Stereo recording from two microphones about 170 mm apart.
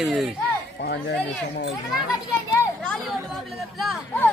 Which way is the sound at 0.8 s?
70° left (ahead or behind).